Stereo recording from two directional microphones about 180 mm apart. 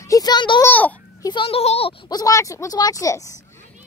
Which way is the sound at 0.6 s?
10° left (ahead or behind).